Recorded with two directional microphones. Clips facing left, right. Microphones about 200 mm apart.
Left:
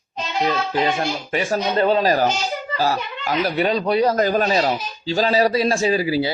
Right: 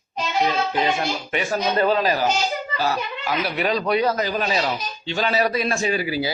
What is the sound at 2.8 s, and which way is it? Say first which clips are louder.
A man's voice: left 3 dB; 40° left (ahead or behind).